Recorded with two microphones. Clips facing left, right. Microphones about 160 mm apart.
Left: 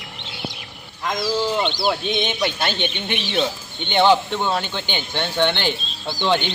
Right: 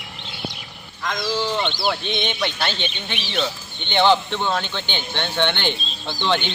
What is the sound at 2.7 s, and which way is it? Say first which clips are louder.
Speech: left 4 dB; 55° left (ahead or behind).